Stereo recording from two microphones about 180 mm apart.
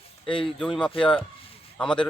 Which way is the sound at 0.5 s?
5° left (ahead or behind).